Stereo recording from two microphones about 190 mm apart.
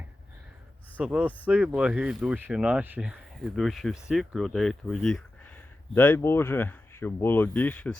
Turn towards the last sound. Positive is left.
turn(degrees=10)  # may be behind; listen again after turning